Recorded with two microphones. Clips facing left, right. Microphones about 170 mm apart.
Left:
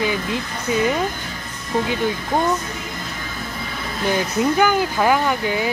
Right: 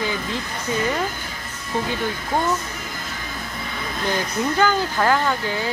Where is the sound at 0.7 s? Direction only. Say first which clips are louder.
Left 4 dB; 15° left (ahead or behind).